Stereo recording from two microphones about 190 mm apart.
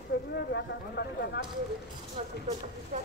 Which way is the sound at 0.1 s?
65° left (ahead or behind).